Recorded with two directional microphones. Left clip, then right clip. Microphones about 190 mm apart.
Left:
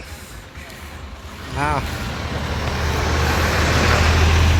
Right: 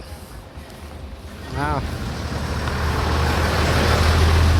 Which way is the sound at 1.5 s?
5° right (ahead or behind).